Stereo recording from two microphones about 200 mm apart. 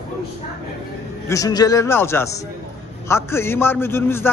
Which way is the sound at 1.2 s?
15° left (ahead or behind).